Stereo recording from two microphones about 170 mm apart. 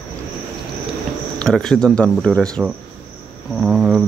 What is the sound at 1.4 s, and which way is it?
Speech, 5° left (ahead or behind).